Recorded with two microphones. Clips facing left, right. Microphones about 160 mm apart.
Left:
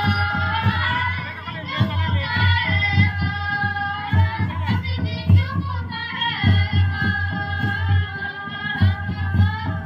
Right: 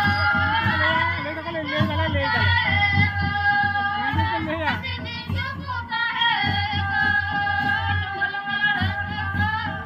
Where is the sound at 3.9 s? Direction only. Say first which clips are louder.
Right 2 dB; 75° right (ahead or behind).